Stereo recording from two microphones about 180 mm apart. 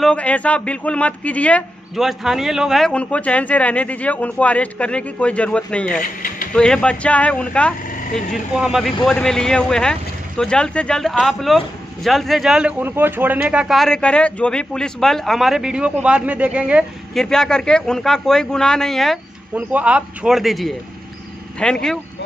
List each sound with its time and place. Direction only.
0.0 s speech: 5° left (ahead or behind)
5.9 s sewing machine: 50° left (ahead or behind)
6.5 s speech: 5° left (ahead or behind)
19.5 s speech: 10° right (ahead or behind)